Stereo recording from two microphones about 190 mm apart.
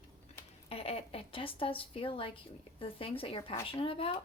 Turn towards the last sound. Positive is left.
turn(degrees=30)  # may be behind; listen again after turning